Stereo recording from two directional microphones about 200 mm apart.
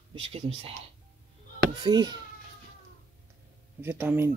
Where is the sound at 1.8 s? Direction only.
20° right (ahead or behind).